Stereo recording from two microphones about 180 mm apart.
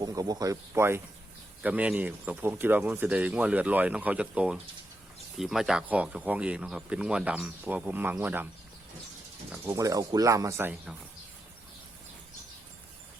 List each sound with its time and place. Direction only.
0.0 s speech: 20° right (ahead or behind)
9.5 s speech: 15° right (ahead or behind)